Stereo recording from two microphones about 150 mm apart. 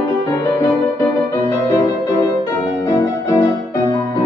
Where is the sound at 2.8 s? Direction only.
15° left (ahead or behind).